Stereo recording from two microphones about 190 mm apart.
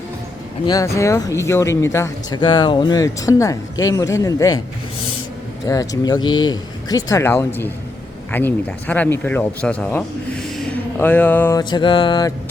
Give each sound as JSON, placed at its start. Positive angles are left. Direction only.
{"t": 0.9, "sound": "speech", "side_deg": 15}
{"t": 2.4, "sound": "speech", "side_deg": 25}
{"t": 5.6, "sound": "speech", "side_deg": 20}
{"t": 11.7, "sound": "speech", "side_deg": 25}